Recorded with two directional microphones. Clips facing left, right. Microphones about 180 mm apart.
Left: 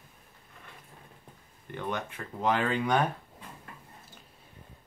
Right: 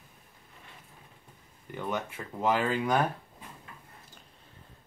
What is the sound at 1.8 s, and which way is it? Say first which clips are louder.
Speech: right 1 dB; 5° right (ahead or behind).